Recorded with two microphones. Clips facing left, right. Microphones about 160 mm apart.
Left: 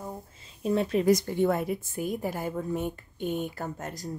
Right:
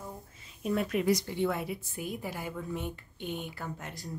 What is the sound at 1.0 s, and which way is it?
A woman's voice, 45° left (ahead or behind).